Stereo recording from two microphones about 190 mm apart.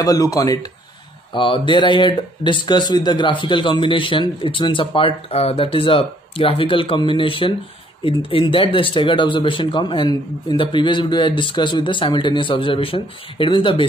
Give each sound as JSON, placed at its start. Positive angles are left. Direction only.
{"t": 0.0, "sound": "a man's voice", "side_deg": 20}